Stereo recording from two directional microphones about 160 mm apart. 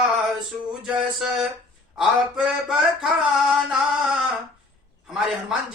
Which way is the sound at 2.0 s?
5° right (ahead or behind).